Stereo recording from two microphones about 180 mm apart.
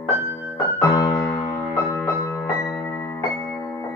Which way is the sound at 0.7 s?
15° left (ahead or behind).